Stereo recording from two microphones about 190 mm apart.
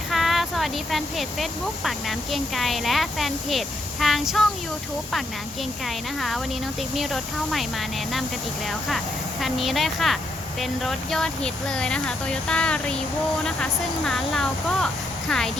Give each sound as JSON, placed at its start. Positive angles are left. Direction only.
{"t": 0.1, "sound": "speech", "side_deg": 0}
{"t": 5.8, "sound": "speech", "side_deg": 0}
{"t": 9.4, "sound": "speech", "side_deg": 0}